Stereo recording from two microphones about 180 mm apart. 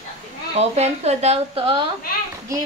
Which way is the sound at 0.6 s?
35° right (ahead or behind).